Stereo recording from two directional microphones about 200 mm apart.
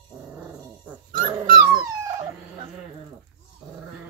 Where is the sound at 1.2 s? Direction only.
25° right (ahead or behind).